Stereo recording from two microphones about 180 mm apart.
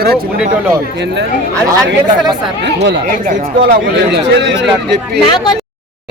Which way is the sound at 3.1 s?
50° right (ahead or behind).